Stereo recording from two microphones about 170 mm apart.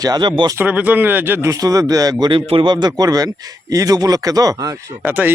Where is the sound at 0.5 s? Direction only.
10° right (ahead or behind).